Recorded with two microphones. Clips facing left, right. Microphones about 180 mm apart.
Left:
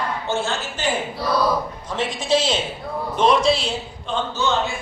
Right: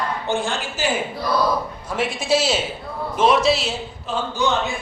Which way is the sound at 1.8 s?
10° right (ahead or behind).